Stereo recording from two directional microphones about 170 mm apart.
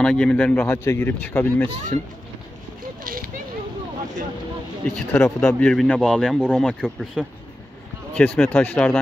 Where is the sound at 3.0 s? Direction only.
60° right (ahead or behind).